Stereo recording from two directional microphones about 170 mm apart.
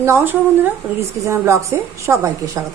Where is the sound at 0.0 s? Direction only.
15° right (ahead or behind).